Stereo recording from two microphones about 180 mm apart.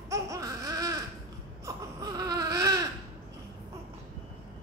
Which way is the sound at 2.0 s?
20° right (ahead or behind).